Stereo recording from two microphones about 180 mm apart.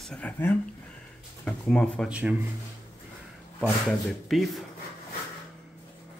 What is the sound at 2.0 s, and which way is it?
Speech, 5° right (ahead or behind).